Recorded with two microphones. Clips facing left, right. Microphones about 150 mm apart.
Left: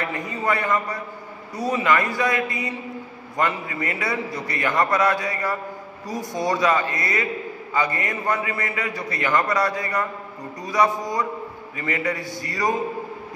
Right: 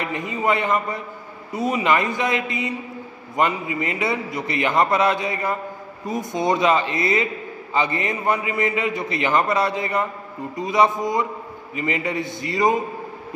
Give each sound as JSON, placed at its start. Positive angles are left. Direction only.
{"t": 0.0, "sound": "a man's voice", "side_deg": -20}